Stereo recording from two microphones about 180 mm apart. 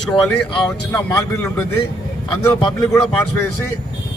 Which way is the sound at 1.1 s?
15° left (ahead or behind).